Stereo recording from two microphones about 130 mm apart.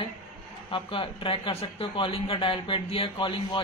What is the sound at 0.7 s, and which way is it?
Speech, 40° left (ahead or behind).